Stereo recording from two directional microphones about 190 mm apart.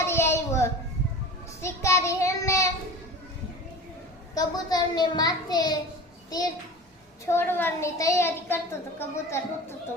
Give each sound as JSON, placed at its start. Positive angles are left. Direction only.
{"t": 0.0, "sound": "a sound", "side_deg": 15}
{"t": 1.6, "sound": "child singing", "side_deg": 15}
{"t": 4.4, "sound": "a child's voice", "side_deg": 20}
{"t": 7.3, "sound": "a woman's voice", "side_deg": 10}